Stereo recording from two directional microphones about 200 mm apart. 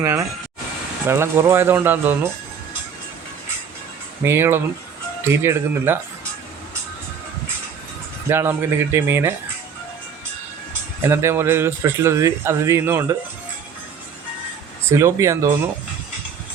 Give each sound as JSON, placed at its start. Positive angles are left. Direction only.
{"t": 0.0, "sound": "a man's voice", "side_deg": -15}
{"t": 4.2, "sound": "a man's voice", "side_deg": -10}
{"t": 8.3, "sound": "a man's voice", "side_deg": -10}
{"t": 11.1, "sound": "a man's voice", "side_deg": -15}
{"t": 14.9, "sound": "a man's voice", "side_deg": -15}